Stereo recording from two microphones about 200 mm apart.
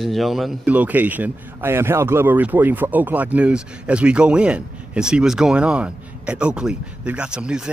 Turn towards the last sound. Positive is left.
turn(degrees=-5)  # may be behind; listen again after turning